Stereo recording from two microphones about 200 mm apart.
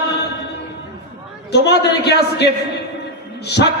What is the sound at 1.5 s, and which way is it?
A man's voice, 55° left (ahead or behind).